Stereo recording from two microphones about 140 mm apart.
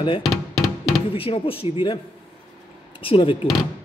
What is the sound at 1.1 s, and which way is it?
Speech, 40° left (ahead or behind).